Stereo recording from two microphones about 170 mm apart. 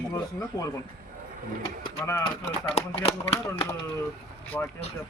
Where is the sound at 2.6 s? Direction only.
35° left (ahead or behind).